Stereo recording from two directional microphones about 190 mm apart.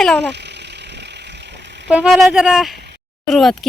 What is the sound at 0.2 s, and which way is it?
Vehicle, 65° right (ahead or behind).